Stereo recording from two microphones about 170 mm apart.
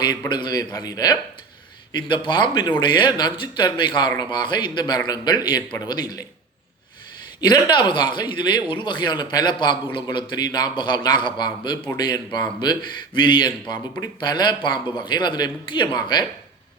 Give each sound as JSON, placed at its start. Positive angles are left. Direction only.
{"t": 0.0, "sound": "speech", "side_deg": 25}
{"t": 7.4, "sound": "speech", "side_deg": 25}